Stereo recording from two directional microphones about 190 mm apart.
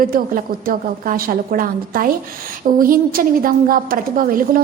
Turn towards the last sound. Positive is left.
turn(degrees=-50)  # may be behind; listen again after turning